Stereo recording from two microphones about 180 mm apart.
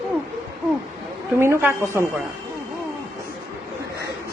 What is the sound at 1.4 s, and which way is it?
Speech, 15° right (ahead or behind).